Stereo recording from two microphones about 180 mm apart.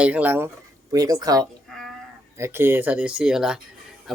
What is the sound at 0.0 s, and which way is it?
Speech, 10° right (ahead or behind).